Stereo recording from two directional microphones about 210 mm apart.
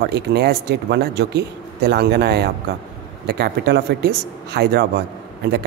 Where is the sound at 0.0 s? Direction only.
50° right (ahead or behind).